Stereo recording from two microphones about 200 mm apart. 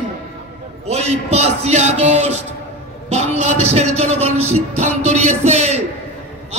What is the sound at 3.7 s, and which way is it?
Music, 30° right (ahead or behind).